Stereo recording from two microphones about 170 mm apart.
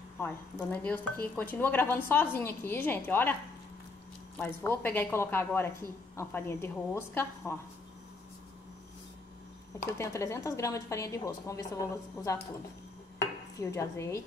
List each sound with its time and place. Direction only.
0.2 s speech: 10° left (ahead or behind)
4.4 s speech: 15° left (ahead or behind)
9.9 s speech: 15° left (ahead or behind)
13.6 s speech: 15° left (ahead or behind)